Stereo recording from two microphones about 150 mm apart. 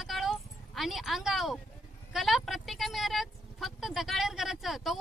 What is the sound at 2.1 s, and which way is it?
Speech, centre (ahead or behind).